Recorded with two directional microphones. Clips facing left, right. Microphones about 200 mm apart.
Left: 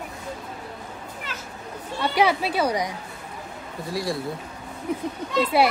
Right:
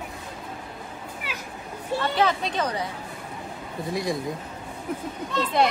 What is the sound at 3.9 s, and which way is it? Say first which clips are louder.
Speech: even; 20° right (ahead or behind).